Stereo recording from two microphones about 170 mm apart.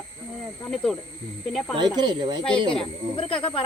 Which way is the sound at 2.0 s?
25° right (ahead or behind).